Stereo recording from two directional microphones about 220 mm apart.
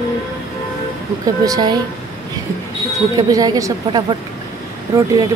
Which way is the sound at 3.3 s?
15° right (ahead or behind).